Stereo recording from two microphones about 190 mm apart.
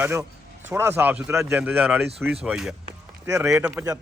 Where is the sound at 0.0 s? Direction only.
15° right (ahead or behind).